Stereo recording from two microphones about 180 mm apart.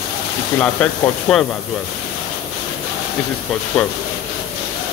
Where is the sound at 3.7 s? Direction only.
Centre (ahead or behind).